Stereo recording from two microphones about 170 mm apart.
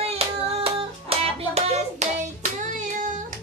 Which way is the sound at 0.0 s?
35° right (ahead or behind).